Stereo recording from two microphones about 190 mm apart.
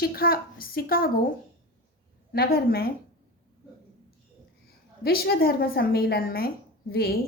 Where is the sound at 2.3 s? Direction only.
55° left (ahead or behind).